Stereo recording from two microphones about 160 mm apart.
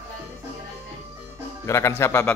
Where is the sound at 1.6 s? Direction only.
20° left (ahead or behind).